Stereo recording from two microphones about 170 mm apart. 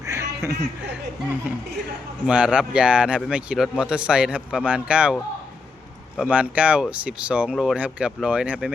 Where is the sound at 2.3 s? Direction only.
5° right (ahead or behind).